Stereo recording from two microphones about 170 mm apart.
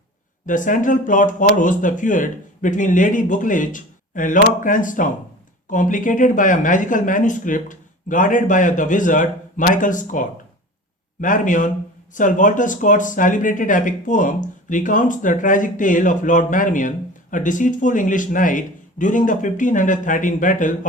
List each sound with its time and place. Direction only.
0.4 s speech: 50° left (ahead or behind)